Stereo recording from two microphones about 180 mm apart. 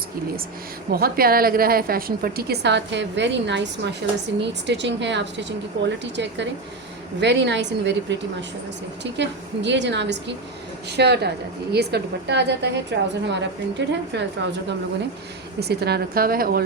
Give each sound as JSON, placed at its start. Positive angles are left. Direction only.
{"t": 0.9, "sound": "a woman's voice", "side_deg": -55}
{"t": 10.9, "sound": "a woman's voice", "side_deg": -65}
{"t": 15.6, "sound": "a woman's voice", "side_deg": -65}